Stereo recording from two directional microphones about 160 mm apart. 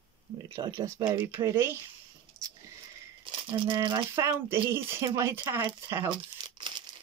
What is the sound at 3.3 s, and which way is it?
Speech, 30° right (ahead or behind).